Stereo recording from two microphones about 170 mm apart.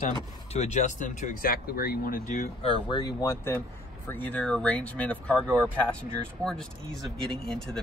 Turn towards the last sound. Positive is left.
turn(degrees=0)  # may be behind; listen again after turning